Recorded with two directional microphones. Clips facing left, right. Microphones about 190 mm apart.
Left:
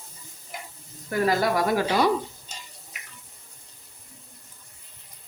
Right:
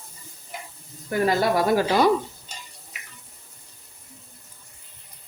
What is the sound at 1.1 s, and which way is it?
Speech, 25° right (ahead or behind).